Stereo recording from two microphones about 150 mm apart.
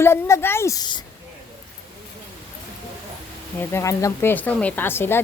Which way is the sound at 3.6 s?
20° left (ahead or behind).